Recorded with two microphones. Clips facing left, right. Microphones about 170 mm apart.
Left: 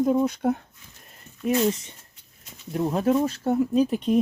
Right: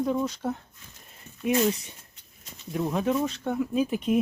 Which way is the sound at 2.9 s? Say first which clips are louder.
Left 5 dB; 40° left (ahead or behind).